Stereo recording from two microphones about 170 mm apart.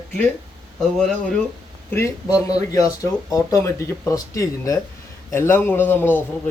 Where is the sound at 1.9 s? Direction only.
15° left (ahead or behind).